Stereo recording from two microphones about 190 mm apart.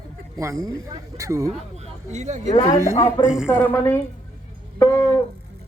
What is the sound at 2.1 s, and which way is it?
Speech, 40° right (ahead or behind).